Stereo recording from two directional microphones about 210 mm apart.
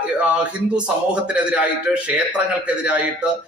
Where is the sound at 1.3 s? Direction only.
5° right (ahead or behind).